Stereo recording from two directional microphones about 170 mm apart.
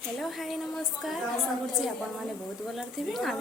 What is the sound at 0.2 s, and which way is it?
Speech, centre (ahead or behind).